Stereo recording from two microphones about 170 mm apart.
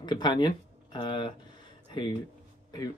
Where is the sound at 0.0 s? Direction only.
25° left (ahead or behind).